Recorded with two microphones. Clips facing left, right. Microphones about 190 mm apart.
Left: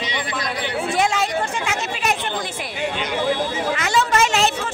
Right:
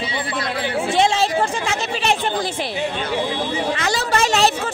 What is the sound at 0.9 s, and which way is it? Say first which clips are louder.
Speech: right 3 dB; 25° right (ahead or behind).